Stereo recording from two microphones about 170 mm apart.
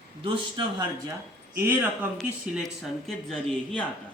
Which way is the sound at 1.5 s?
10° right (ahead or behind).